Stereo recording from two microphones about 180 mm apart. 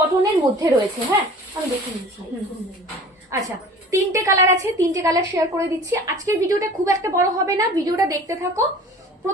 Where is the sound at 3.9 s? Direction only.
15° right (ahead or behind).